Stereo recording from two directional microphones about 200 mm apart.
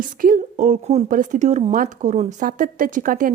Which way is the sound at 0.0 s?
45° right (ahead or behind).